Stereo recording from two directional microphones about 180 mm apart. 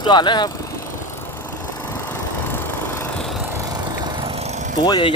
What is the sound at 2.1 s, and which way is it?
Vehicle, 10° left (ahead or behind).